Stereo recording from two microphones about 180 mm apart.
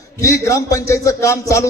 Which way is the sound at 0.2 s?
15° left (ahead or behind).